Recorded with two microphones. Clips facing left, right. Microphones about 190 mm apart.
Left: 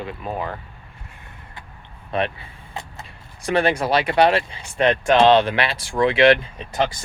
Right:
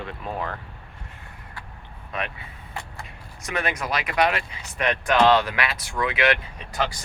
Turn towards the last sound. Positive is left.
turn(degrees=25)  # may be behind; listen again after turning